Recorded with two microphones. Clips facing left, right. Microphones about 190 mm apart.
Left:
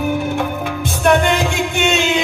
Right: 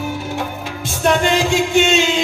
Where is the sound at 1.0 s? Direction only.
55° left (ahead or behind).